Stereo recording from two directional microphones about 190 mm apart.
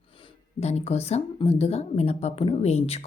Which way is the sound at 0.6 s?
35° left (ahead or behind).